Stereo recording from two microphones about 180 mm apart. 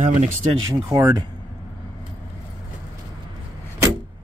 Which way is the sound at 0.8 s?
15° right (ahead or behind).